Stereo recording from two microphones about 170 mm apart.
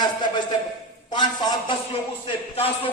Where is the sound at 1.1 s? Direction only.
25° left (ahead or behind).